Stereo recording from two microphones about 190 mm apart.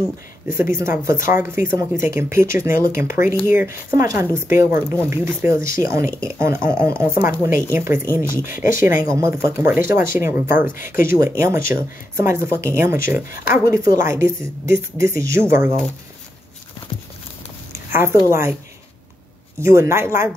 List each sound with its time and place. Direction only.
0.5 s speech: 15° right (ahead or behind)
8.2 s speech: 45° left (ahead or behind)
8.7 s speech: 15° right (ahead or behind)
17.7 s a sound: 15° right (ahead or behind)
18.3 s speech: 15° right (ahead or behind)
19.6 s speech: 15° right (ahead or behind)